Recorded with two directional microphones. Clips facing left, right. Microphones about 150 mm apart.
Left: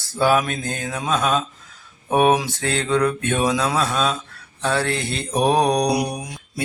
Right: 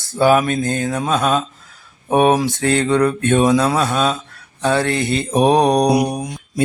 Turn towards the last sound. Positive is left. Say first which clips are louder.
# right 5 dB
turn(degrees=-50)  # may be behind; listen again after turning